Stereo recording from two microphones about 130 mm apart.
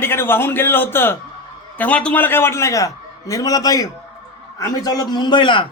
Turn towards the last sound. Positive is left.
turn(degrees=35)  # may be behind; listen again after turning